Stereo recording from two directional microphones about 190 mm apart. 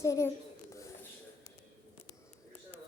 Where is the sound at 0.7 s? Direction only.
15° left (ahead or behind).